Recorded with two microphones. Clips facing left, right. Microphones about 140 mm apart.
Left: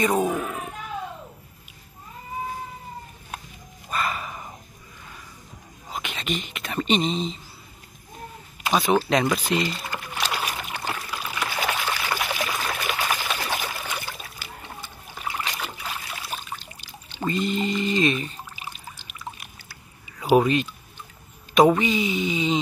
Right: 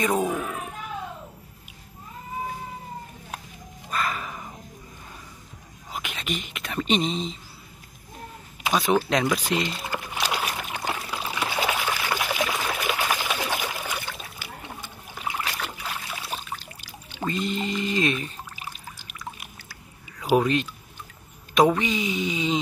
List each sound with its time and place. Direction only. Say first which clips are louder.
0.0 s speech: left 2 dB; centre (ahead or behind)
3.9 s dog: left 1 dB; 5° left (ahead or behind)
5.9 s speech: left 2 dB; 5° right (ahead or behind)
8.7 s speech: left 2 dB; 5° left (ahead or behind)
9.9 s a sound: right 4 dB; 15° right (ahead or behind)
10.9 s pour: right 2 dB; 20° right (ahead or behind)
11.4 s trickle: right 1 dB; 10° right (ahead or behind)
12.4 s pour: right 1 dB; 5° right (ahead or behind)
14.0 s splash: even; 5° left (ahead or behind)
14.4 s splash: right 1 dB; 15° right (ahead or behind)
15.3 s trickle: even; centre (ahead or behind)
17.2 s pour: left 3 dB; centre (ahead or behind)
20.3 s speech: left 2 dB; 5° left (ahead or behind)